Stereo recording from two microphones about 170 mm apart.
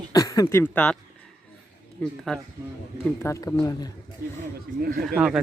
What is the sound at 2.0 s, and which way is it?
Speech, 5° left (ahead or behind).